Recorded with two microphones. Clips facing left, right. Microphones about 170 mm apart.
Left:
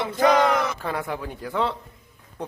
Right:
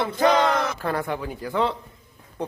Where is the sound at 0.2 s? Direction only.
30° right (ahead or behind).